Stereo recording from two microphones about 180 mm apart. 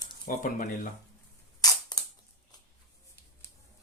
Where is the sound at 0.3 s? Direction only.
50° left (ahead or behind).